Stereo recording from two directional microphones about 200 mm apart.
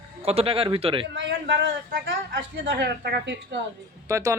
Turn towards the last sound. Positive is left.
turn(degrees=-15)  # may be behind; listen again after turning